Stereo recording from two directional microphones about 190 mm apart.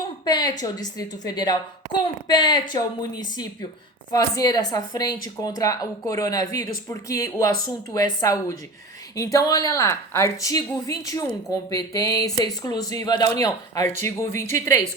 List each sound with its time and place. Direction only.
0.3 s a woman's voice: 20° left (ahead or behind)
4.1 s a woman's voice: 20° left (ahead or behind)